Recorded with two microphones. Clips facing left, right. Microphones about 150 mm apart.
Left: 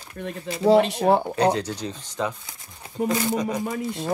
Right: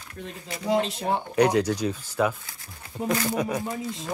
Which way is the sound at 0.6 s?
75° left (ahead or behind).